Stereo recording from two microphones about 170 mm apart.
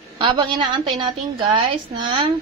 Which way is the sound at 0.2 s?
30° right (ahead or behind).